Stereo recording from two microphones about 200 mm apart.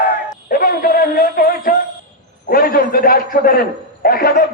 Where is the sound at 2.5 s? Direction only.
45° left (ahead or behind).